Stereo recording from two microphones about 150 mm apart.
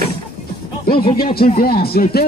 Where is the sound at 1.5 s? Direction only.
85° left.